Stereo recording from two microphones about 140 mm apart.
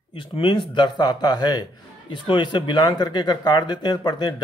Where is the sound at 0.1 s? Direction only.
35° left (ahead or behind).